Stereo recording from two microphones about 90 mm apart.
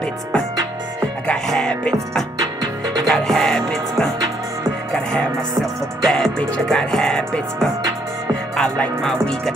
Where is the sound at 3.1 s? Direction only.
5° left (ahead or behind).